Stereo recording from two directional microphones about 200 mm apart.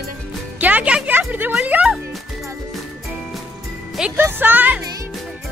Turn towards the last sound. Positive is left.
turn(degrees=-10)  # may be behind; listen again after turning